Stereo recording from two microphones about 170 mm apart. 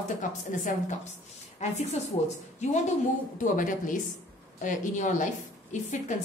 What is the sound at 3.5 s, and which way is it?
A woman's voice, 50° left (ahead or behind).